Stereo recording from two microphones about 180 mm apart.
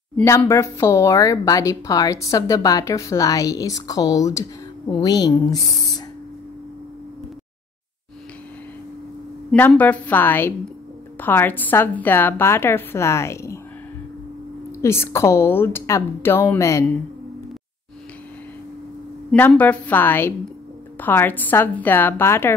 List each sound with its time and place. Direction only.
0.2 s speech: 15° left (ahead or behind)
9.5 s a woman's voice: 5° left (ahead or behind)
14.8 s a woman's voice: 15° left (ahead or behind)
19.3 s a woman's voice: 10° left (ahead or behind)